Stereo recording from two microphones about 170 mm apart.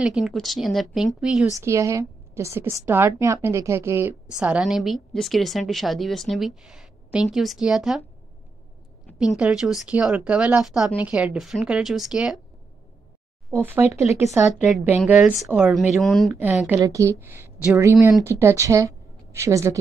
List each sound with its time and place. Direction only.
0.0 s a woman's voice: 5° right (ahead or behind)
1.6 s a woman's voice: 15° right (ahead or behind)
4.4 s a woman's voice: 5° right (ahead or behind)
9.0 s a woman's voice: centre (ahead or behind)
13.5 s a woman's voice: 15° right (ahead or behind)
16.3 s a woman's voice: 10° right (ahead or behind)